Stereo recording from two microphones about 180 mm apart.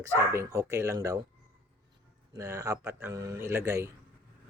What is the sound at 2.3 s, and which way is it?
Speech, 15° right (ahead or behind).